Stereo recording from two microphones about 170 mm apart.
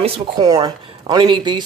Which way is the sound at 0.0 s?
30° right (ahead or behind).